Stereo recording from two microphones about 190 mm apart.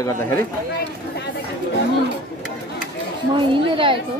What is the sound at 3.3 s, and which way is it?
Speech, 25° right (ahead or behind).